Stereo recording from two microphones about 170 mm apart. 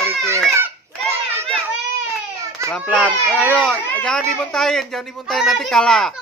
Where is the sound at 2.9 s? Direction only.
5° left (ahead or behind).